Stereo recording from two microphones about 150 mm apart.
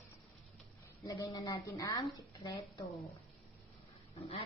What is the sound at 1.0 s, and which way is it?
A woman's voice, 25° left (ahead or behind).